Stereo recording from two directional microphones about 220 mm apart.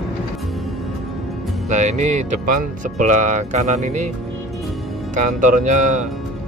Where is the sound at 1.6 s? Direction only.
30° right (ahead or behind).